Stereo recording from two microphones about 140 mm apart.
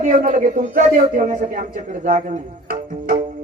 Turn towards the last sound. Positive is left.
turn(degrees=-55)  # may be behind; listen again after turning